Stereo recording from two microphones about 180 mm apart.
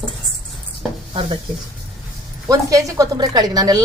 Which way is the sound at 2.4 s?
20° right (ahead or behind).